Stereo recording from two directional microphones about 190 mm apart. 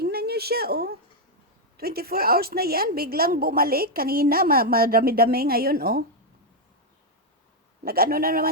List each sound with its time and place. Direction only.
0.0 s a sound: 55° right (ahead or behind)
1.7 s a woman's voice: 55° right (ahead or behind)
7.9 s a woman's voice: 50° right (ahead or behind)